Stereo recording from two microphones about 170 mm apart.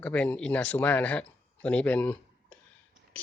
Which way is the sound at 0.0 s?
10° left (ahead or behind).